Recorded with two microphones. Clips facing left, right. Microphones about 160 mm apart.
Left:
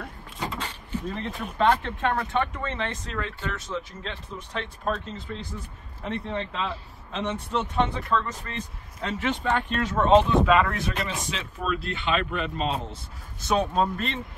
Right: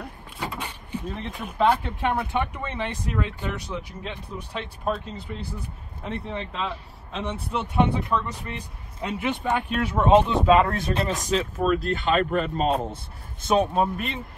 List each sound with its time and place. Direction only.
0.0 s vehicle: centre (ahead or behind)
0.6 s vehicle: 10° right (ahead or behind)
1.4 s speech: 5° right (ahead or behind)
7.5 s speech: 10° right (ahead or behind)
10.4 s speech: 25° right (ahead or behind); by 12.8 s 50° right (ahead or behind)
13.5 s speech: 15° right (ahead or behind)